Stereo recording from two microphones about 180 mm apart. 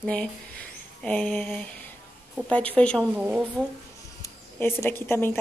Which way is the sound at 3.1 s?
5° right (ahead or behind).